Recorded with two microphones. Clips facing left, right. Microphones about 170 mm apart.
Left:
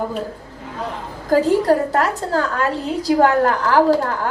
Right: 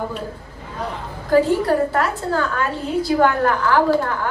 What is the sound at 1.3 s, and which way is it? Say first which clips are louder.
A woman's voice: left 1 dB; 40° left (ahead or behind).